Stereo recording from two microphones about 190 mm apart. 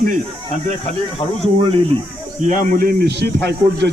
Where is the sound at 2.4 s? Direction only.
40° right (ahead or behind); by 3.9 s 60° right (ahead or behind).